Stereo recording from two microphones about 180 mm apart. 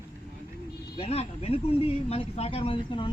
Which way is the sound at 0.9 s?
35° left (ahead or behind).